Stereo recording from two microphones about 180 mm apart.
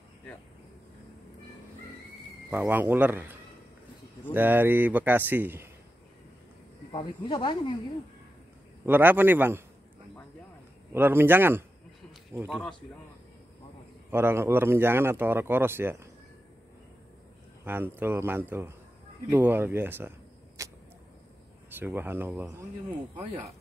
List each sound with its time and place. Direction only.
2.5 s speech: 10° right (ahead or behind)
6.9 s speech: 25° left (ahead or behind)
8.8 s speech: 10° right (ahead or behind)
10.9 s speech: 10° right (ahead or behind)
14.1 s speech: 15° right (ahead or behind)
17.6 s speech: 10° right (ahead or behind)
21.7 s speech: 10° right (ahead or behind)